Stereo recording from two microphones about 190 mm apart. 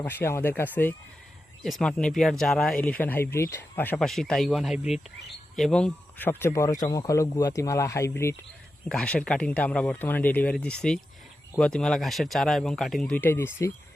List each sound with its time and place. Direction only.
0.0 s speech: 10° left (ahead or behind)
8.9 s speech: 5° left (ahead or behind)